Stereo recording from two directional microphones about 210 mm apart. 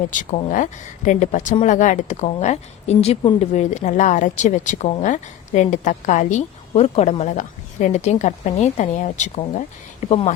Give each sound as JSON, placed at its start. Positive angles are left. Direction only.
{"t": 0.1, "sound": "speech", "side_deg": 35}